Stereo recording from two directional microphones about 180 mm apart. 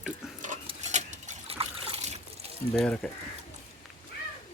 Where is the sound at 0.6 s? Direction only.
40° right (ahead or behind).